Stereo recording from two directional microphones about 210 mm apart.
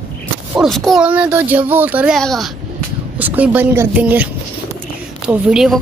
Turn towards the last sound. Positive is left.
turn(degrees=0)  # may be behind; listen again after turning